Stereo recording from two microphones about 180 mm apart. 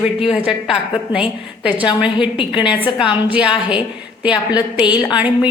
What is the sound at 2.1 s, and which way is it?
Speech, 30° left (ahead or behind).